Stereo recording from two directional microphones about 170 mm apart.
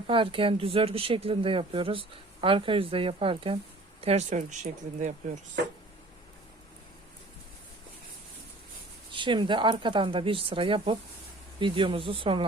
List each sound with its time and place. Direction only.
0.1 s speech: 30° right (ahead or behind)
9.1 s speech: 30° right (ahead or behind)